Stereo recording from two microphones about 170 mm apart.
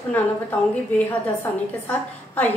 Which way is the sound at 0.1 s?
10° left (ahead or behind).